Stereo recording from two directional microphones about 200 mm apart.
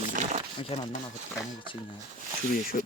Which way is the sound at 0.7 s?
30° left (ahead or behind).